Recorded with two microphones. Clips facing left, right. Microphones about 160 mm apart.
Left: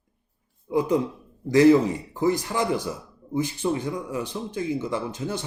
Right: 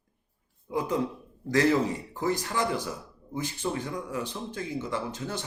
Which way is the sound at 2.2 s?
15° left (ahead or behind).